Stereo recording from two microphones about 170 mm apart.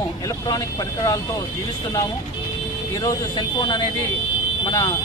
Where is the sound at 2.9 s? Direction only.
20° left (ahead or behind).